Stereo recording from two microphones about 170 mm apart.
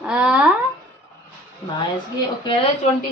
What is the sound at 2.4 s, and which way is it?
Speech, 30° left (ahead or behind).